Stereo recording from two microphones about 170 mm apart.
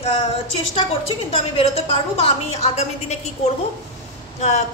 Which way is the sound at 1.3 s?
35° left (ahead or behind).